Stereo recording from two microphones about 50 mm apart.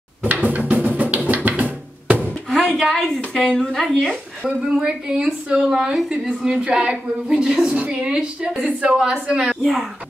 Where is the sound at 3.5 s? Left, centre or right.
Centre.